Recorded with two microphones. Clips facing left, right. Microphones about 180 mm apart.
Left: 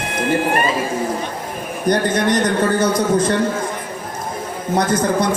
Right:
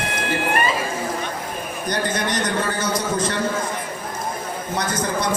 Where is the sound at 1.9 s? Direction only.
55° left (ahead or behind).